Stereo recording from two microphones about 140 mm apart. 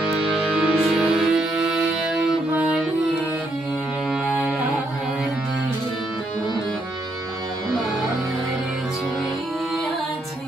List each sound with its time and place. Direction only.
0.3 s music: centre (ahead or behind)
4.1 s music: 5° right (ahead or behind)